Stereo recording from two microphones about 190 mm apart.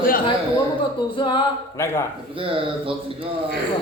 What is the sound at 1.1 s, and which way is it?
Speech, 25° left (ahead or behind).